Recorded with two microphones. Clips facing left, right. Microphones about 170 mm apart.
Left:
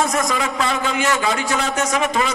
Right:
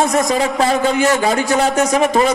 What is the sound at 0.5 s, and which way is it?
A man's voice, 40° right (ahead or behind).